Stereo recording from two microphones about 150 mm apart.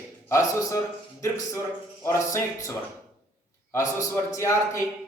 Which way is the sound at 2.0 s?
20° left (ahead or behind).